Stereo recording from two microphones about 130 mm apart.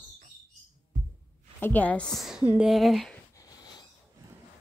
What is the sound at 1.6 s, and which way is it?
A woman's voice, 10° left (ahead or behind).